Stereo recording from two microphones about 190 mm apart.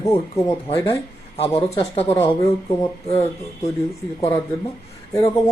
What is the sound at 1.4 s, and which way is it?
Speech, 30° left (ahead or behind).